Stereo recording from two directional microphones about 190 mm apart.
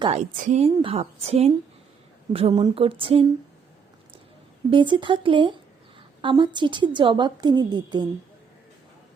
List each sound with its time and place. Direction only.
0.0 s a woman's voice: 30° right (ahead or behind)
4.7 s a woman's voice: 25° right (ahead or behind)